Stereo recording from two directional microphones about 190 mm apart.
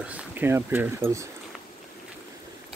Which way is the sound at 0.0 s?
5° right (ahead or behind).